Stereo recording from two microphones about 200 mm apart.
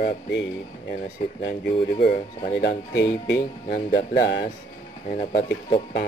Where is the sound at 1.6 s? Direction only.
50° left (ahead or behind).